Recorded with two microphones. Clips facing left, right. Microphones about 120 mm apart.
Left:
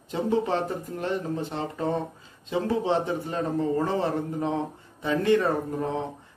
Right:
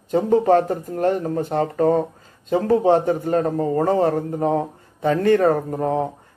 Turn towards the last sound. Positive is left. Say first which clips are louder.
# right 7 dB
turn(degrees=-45)  # may be behind; listen again after turning